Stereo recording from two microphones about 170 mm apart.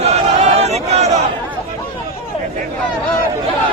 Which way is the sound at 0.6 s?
40° right (ahead or behind).